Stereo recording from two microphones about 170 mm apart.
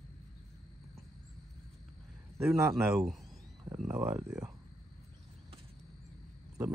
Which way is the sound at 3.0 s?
Centre (ahead or behind).